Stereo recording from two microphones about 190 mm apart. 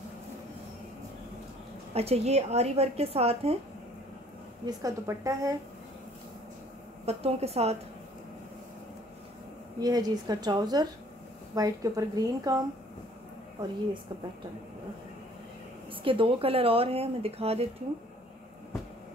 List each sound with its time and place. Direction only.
2.0 s speech: 35° right (ahead or behind)
4.6 s a woman's voice: 15° right (ahead or behind)
7.1 s speech: 35° right (ahead or behind)
9.8 s a woman's voice: 20° right (ahead or behind)
15.9 s speech: 25° right (ahead or behind)